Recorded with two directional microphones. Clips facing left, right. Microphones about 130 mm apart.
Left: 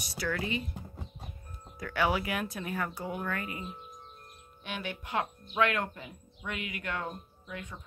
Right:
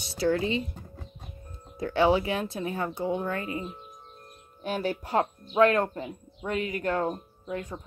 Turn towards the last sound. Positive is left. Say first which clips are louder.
# right 9 dB
turn(degrees=-35)  # may be behind; listen again after turning